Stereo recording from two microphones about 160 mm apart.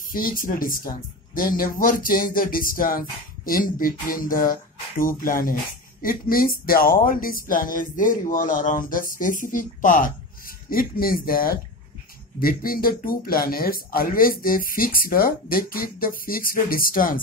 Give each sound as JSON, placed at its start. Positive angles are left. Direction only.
{"t": 0.1, "sound": "speech", "side_deg": 60}